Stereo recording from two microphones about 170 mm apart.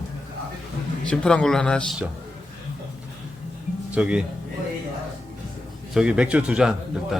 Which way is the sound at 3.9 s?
5° right (ahead or behind).